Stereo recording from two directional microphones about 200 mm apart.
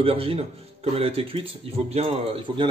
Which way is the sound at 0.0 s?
30° right (ahead or behind).